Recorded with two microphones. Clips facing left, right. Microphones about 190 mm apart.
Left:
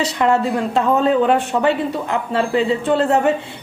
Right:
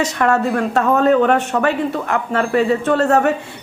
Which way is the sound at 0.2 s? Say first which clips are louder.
Even; 20° left (ahead or behind).